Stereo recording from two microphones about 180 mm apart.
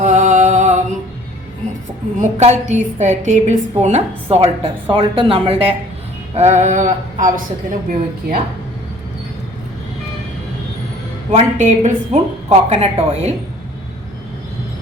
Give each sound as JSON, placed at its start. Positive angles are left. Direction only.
{"t": 0.0, "sound": "music", "side_deg": -40}
{"t": 2.1, "sound": "a woman's voice", "side_deg": -40}
{"t": 11.3, "sound": "a woman's voice", "side_deg": -40}